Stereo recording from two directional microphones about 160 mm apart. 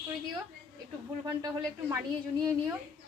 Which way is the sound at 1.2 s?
25° right (ahead or behind).